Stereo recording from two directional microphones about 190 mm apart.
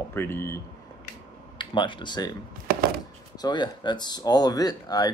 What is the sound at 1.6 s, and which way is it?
Speech, 25° left (ahead or behind).